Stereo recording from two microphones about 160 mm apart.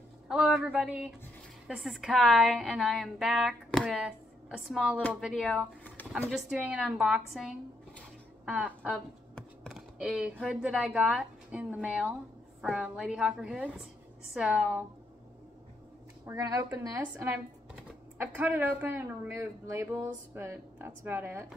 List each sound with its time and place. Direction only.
0.3 s a woman's voice: 5° right (ahead or behind)
9.3 s computer keyboard: centre (ahead or behind)
10.4 s a woman's voice: 5° right (ahead or behind)
16.3 s a woman's voice: 15° right (ahead or behind)